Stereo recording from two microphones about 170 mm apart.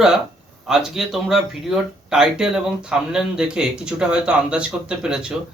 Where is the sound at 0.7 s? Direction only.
Centre (ahead or behind).